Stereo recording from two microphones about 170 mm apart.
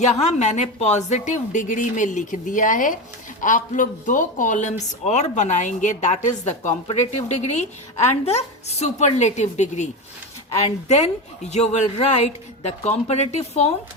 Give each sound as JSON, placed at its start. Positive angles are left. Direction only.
{"t": 0.0, "sound": "a woman's voice", "side_deg": 40}